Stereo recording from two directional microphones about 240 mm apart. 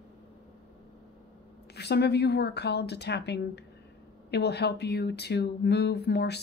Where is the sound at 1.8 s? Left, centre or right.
Left.